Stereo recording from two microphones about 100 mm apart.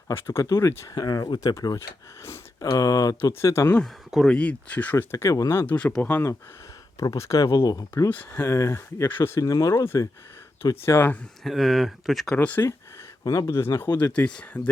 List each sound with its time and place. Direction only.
0.1 s speech: 25° left (ahead or behind)
4.3 s speech: 15° left (ahead or behind)
5.1 s speech: 35° left (ahead or behind)
5.6 s speech: 15° left (ahead or behind)
7.0 s speech: 35° left (ahead or behind)
9.4 s speech: 35° left (ahead or behind); by 11.2 s 20° left (ahead or behind)
11.4 s speech: centre (ahead or behind)
13.2 s speech: 30° left (ahead or behind); by 14.6 s 10° left (ahead or behind)